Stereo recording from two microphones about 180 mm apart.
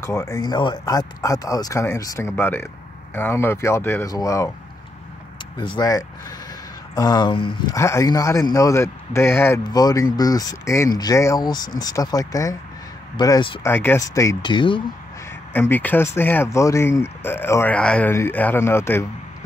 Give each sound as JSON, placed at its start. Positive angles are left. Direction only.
{"t": 0.0, "sound": "speech", "side_deg": 20}
{"t": 5.6, "sound": "speech", "side_deg": 25}
{"t": 13.7, "sound": "speech", "side_deg": 10}
{"t": 15.5, "sound": "speech", "side_deg": 10}